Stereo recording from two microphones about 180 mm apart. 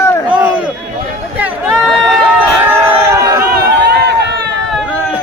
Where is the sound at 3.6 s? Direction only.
65° right (ahead or behind).